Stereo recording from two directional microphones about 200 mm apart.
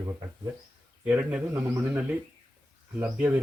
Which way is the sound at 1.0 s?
5° right (ahead or behind).